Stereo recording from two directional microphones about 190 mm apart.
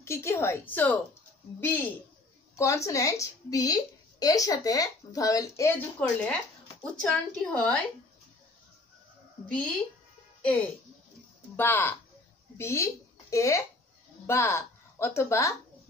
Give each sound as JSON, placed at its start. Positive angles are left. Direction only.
{"t": 0.0, "sound": "a woman's voice", "side_deg": 15}
{"t": 2.5, "sound": "a woman's voice", "side_deg": 15}
{"t": 10.4, "sound": "a woman's voice", "side_deg": 5}